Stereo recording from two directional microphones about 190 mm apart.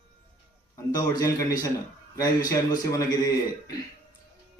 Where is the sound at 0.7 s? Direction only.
20° left (ahead or behind).